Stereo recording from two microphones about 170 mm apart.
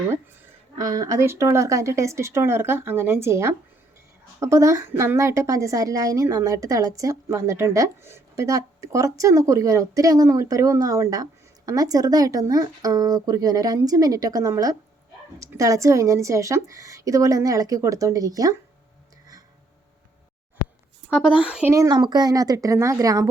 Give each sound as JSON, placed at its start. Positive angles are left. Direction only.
{"t": 0.8, "sound": "a woman's voice", "side_deg": -20}
{"t": 21.2, "sound": "a woman's voice", "side_deg": -5}
{"t": 21.7, "sound": "a woman's voice", "side_deg": -20}